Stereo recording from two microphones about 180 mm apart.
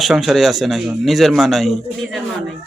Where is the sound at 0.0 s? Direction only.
Centre (ahead or behind).